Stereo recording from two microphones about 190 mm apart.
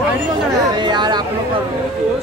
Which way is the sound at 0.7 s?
25° right (ahead or behind).